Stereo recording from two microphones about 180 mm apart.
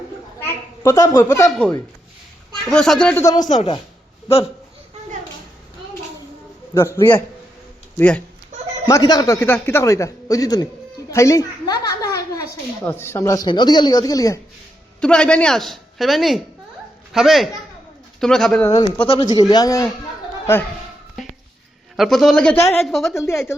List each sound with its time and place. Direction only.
0.4 s a sound: 15° left (ahead or behind)
1.5 s a woman's voice: 5° left (ahead or behind)
3.5 s a woman's voice: 30° left (ahead or behind)
6.7 s a man's voice: 15° left (ahead or behind)
8.9 s a man's voice: 20° left (ahead or behind)
11.1 s a sound: 15° left (ahead or behind)
12.8 s a man's voice: 10° left (ahead or behind)
15.0 s a woman's voice: 5° left (ahead or behind)
19.0 s a man's voice: 25° left (ahead or behind)
21.9 s a woman's voice: centre (ahead or behind)
22.5 s a man's voice: 15° left (ahead or behind)
22.8 s a woman's voice: centre (ahead or behind)
23.1 s a man's voice: 15° left (ahead or behind)